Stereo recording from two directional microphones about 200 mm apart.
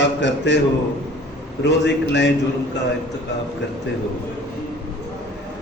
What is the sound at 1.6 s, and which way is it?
Mantra, 60° left (ahead or behind).